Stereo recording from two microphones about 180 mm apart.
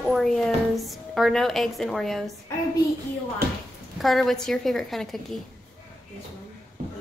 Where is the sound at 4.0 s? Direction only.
Centre (ahead or behind).